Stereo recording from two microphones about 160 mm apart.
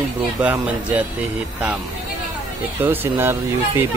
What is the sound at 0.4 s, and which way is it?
Speech, 10° right (ahead or behind).